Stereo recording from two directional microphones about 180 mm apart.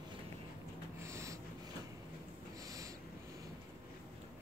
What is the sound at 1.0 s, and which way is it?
Snort, 15° right (ahead or behind).